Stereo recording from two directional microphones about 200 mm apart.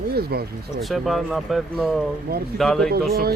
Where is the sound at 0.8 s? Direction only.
Centre (ahead or behind).